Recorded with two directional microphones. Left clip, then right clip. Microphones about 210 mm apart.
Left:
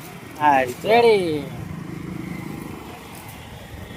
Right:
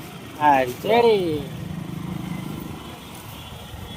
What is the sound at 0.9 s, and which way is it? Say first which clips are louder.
Speech: left 2 dB; 40° left (ahead or behind).